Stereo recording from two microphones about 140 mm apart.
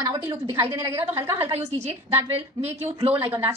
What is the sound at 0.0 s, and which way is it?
Speech, 20° right (ahead or behind).